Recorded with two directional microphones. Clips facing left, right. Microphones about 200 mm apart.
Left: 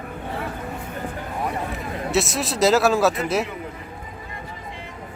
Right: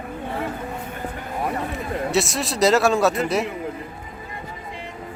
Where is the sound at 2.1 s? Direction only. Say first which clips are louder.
Left 2 dB; centre (ahead or behind).